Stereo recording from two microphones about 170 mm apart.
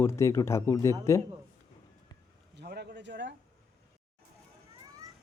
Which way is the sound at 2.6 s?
70° right (ahead or behind).